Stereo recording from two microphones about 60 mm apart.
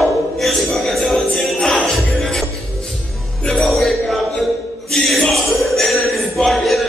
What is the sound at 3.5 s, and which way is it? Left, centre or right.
Music, centre.